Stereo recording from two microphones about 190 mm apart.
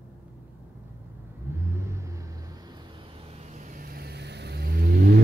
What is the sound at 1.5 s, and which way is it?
Vehicle, 15° right (ahead or behind).